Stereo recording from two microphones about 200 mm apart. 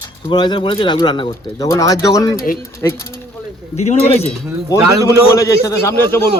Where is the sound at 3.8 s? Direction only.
35° left (ahead or behind).